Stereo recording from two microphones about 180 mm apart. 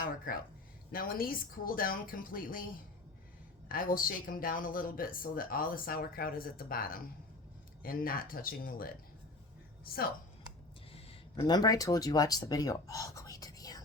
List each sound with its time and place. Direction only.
0.9 s speech: 55° left (ahead or behind)
3.7 s speech: 50° left (ahead or behind)
10.9 s speech: 30° left (ahead or behind)